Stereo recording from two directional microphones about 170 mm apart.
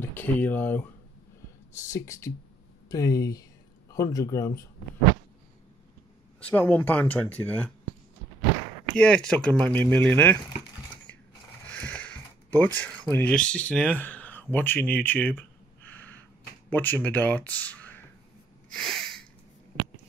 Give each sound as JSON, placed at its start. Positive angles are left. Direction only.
{"t": 0.1, "sound": "speech", "side_deg": 10}
{"t": 1.9, "sound": "speech", "side_deg": 15}
{"t": 6.4, "sound": "speech", "side_deg": 10}
{"t": 8.9, "sound": "speech", "side_deg": 5}
{"t": 11.7, "sound": "a sound", "side_deg": 10}
{"t": 16.7, "sound": "speech", "side_deg": 10}
{"t": 18.7, "sound": "a sound", "side_deg": 0}